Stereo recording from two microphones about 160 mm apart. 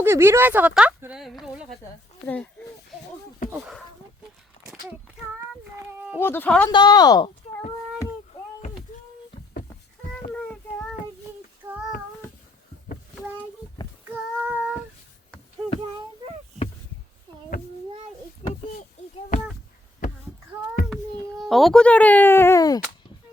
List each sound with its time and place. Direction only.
0.0 s speech: 15° right (ahead or behind); by 2.5 s 10° left (ahead or behind)
3.5 s speech: 10° right (ahead or behind)
4.6 s a sound: 45° left (ahead or behind)
6.1 s speech: 15° left (ahead or behind)
6.7 s speech: 30° left (ahead or behind)
8.9 s a sound: 50° left (ahead or behind)
10.3 s child singing: 5° left (ahead or behind)
11.6 s child singing: 10° right (ahead or behind)
14.1 s child singing: 10° right (ahead or behind)
18.4 s a sound: 40° left (ahead or behind)
20.9 s speech: centre (ahead or behind); by 22.8 s 20° left (ahead or behind)